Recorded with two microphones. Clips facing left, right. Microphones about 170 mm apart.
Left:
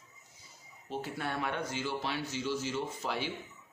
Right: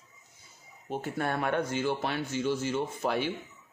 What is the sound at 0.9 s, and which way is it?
Speech, 50° right (ahead or behind).